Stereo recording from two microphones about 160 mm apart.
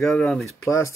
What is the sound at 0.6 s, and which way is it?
Speech, 20° left (ahead or behind).